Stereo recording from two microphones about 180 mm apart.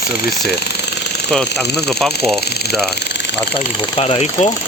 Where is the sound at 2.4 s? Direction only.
65° left (ahead or behind).